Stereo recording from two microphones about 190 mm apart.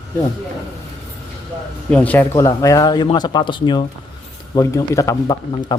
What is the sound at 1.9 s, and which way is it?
Speech, 10° left (ahead or behind).